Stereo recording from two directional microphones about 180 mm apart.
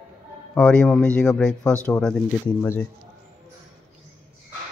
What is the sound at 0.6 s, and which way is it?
Speech, 5° left (ahead or behind).